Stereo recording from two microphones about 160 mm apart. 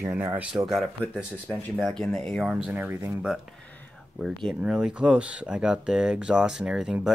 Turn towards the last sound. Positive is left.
turn(degrees=-5)  # may be behind; listen again after turning